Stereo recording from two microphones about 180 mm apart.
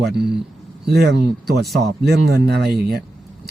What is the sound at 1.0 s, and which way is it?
Speech, 65° right (ahead or behind).